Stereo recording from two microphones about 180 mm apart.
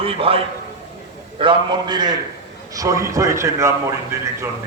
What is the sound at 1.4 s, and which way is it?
A man's voice, 25° right (ahead or behind).